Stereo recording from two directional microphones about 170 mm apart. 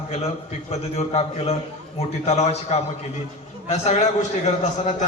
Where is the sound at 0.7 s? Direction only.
35° left (ahead or behind).